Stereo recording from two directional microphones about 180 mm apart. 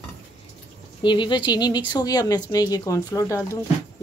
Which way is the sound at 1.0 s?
25° left (ahead or behind).